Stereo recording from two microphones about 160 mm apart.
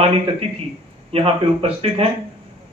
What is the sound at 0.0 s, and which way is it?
A man's voice, 40° right (ahead or behind).